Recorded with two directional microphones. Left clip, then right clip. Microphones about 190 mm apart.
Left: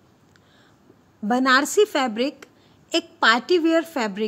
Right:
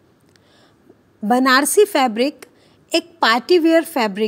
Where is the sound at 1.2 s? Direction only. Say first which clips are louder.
Right 4 dB; 20° right (ahead or behind).